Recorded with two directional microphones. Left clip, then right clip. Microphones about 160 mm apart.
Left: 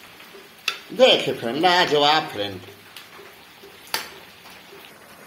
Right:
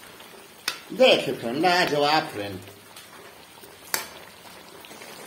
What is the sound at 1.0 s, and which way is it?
A man's voice, 20° left (ahead or behind).